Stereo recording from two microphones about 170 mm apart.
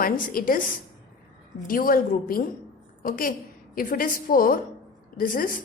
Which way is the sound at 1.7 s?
55° left (ahead or behind).